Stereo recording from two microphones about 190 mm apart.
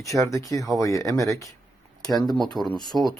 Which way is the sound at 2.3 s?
Centre (ahead or behind).